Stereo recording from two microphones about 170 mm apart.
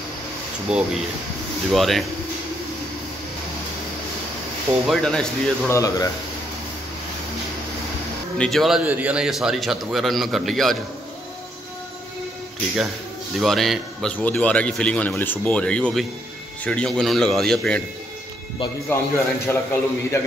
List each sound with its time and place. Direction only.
0.7 s a man's voice: 5° right (ahead or behind)
4.8 s a man's voice: centre (ahead or behind)
5.7 s speech: 20° left (ahead or behind)
8.4 s a man's voice: centre (ahead or behind)
13.4 s a man's voice: centre (ahead or behind)
18.9 s a man's voice: 15° left (ahead or behind)